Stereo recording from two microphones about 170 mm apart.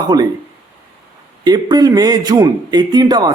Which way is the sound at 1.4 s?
25° right (ahead or behind).